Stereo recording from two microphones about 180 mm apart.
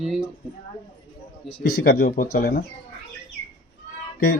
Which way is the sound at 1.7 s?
60° left (ahead or behind).